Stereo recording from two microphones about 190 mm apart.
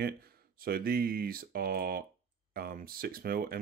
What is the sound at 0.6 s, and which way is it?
Speech, 55° right (ahead or behind).